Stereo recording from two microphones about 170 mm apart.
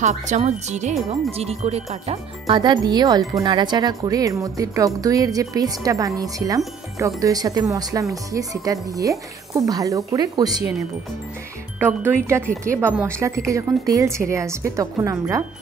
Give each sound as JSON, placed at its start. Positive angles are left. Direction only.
{"t": 0.0, "sound": "speech", "side_deg": -45}
{"t": 11.8, "sound": "speech", "side_deg": -10}